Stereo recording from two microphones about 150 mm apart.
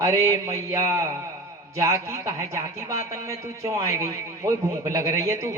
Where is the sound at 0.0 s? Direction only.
20° right (ahead or behind).